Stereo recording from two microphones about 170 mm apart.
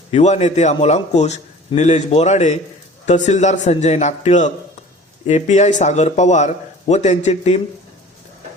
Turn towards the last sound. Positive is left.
turn(degrees=40)  # may be behind; listen again after turning